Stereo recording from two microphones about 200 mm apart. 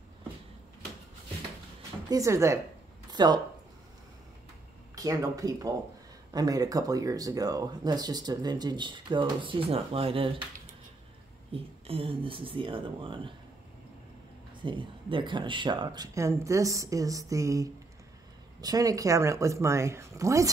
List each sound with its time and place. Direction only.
2.0 s speech: 15° right (ahead or behind)
3.1 s a sound: 20° right (ahead or behind)
4.9 s speech: 15° right (ahead or behind)
11.5 s speech: 30° right (ahead or behind)
14.6 s speech: 25° right (ahead or behind)